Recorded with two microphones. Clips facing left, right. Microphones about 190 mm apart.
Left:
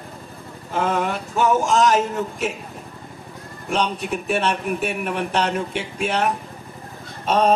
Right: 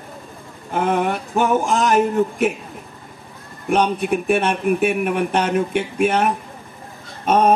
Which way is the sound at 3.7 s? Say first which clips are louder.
Right 5 dB; 55° right (ahead or behind).